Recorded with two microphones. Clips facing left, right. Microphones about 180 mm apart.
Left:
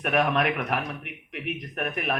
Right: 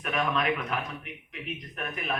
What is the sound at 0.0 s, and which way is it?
A man's voice, 65° left (ahead or behind).